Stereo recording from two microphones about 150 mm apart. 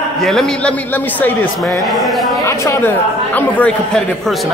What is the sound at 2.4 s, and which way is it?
Speech, 15° left (ahead or behind).